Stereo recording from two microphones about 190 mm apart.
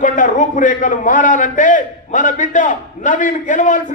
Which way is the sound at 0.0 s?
40° left (ahead or behind).